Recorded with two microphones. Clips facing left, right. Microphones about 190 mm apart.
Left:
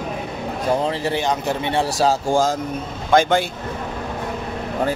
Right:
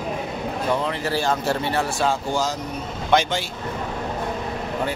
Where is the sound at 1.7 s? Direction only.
35° left (ahead or behind).